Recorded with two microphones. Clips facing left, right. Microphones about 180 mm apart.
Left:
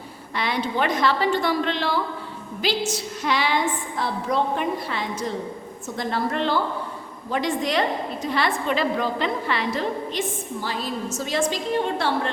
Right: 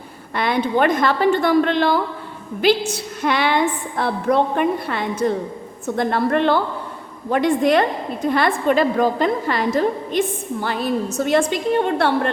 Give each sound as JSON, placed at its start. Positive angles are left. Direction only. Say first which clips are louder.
{"t": 0.3, "sound": "a woman's voice", "louder": "right 6 dB", "side_deg": -55}